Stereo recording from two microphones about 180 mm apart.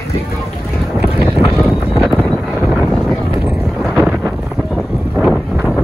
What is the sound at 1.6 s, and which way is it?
Wind noise, centre (ahead or behind).